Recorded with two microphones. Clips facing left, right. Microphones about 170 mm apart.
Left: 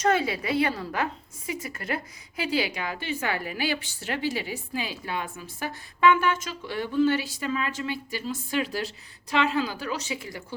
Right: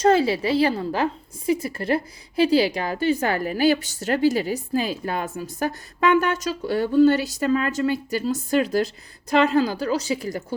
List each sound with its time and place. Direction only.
0.0 s a woman's voice: 30° right (ahead or behind)